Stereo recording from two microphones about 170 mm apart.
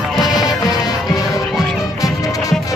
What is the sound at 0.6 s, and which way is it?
Music, 20° left (ahead or behind).